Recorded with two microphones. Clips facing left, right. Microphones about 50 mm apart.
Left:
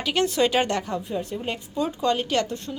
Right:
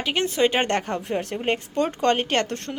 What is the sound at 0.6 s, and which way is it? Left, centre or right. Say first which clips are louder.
Speech: right 2 dB; right.